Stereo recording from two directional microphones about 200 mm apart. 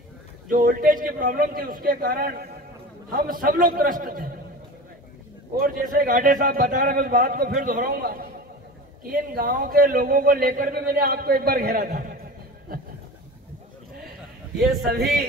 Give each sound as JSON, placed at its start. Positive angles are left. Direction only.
{"t": 0.5, "sound": "a man's voice", "side_deg": -45}
{"t": 5.6, "sound": "a man's voice", "side_deg": -45}
{"t": 14.9, "sound": "a man's voice", "side_deg": -50}